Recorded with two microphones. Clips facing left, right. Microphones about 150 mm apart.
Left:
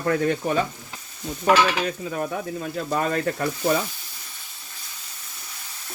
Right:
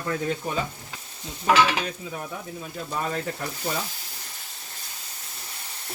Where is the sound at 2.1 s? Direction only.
70° left (ahead or behind).